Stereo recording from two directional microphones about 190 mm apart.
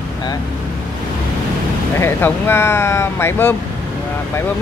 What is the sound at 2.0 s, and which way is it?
Speech, 10° left (ahead or behind).